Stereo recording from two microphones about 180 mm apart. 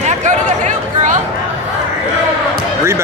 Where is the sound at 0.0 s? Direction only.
40° right (ahead or behind).